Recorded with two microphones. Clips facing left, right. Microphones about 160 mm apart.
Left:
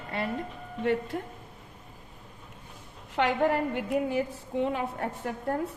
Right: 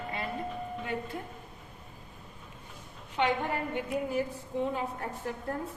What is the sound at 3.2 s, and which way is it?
Speech, 90° left.